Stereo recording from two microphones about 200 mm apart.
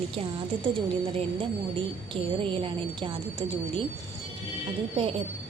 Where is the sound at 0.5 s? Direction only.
25° right (ahead or behind).